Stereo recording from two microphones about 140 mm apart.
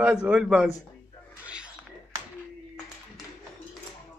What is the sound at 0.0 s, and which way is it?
Speech, 10° right (ahead or behind).